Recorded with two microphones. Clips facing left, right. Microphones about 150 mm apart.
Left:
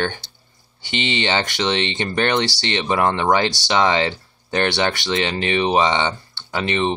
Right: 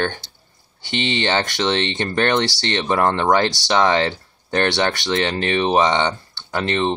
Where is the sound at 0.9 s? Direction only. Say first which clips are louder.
Right 1 dB; 15° left (ahead or behind).